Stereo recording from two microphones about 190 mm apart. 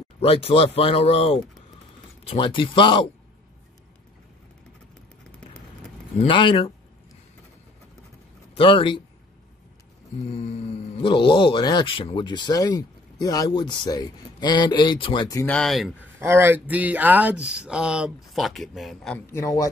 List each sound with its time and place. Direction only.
0.2 s speech: 30° left (ahead or behind)
6.2 s speech: 25° left (ahead or behind)
8.5 s speech: 25° left (ahead or behind)
10.3 s speech: 35° left (ahead or behind)
15.4 s speech: 5° left (ahead or behind)
16.2 s speech: 10° right (ahead or behind)
19.2 s speech: 15° left (ahead or behind)